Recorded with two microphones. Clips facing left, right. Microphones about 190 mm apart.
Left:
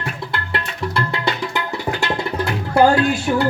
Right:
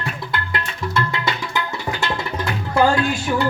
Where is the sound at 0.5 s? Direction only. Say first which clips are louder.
Left 2 dB; 35° left (ahead or behind).